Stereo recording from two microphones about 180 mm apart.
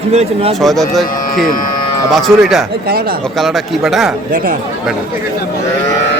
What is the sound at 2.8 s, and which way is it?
Speech, 55° right (ahead or behind).